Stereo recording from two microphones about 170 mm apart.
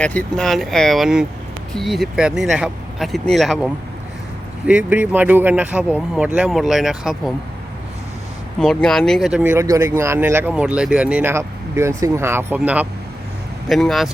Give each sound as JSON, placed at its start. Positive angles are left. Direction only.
{"t": 0.0, "sound": "speech", "side_deg": 10}
{"t": 8.5, "sound": "speech", "side_deg": 5}